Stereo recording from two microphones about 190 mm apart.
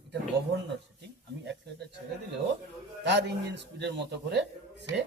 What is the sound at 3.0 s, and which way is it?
A man's voice, 65° right (ahead or behind).